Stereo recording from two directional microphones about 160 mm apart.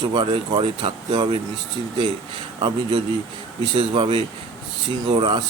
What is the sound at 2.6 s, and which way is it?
Speech, 30° right (ahead or behind).